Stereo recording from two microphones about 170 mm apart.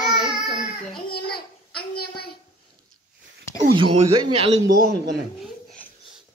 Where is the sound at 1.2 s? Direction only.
65° left (ahead or behind).